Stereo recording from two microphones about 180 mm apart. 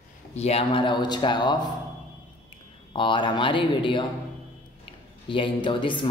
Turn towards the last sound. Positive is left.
turn(degrees=30)  # may be behind; listen again after turning